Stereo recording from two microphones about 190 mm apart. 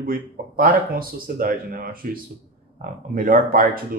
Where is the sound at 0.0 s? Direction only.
50° right (ahead or behind).